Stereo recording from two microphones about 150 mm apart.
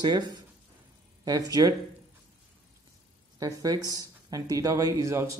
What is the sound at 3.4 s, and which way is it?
Speech, 25° right (ahead or behind).